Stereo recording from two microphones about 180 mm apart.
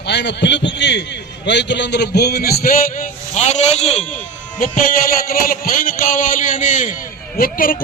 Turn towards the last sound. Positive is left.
turn(degrees=50)  # may be behind; listen again after turning